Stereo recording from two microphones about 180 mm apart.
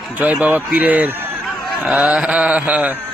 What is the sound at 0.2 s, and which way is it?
A man's voice, 10° right (ahead or behind).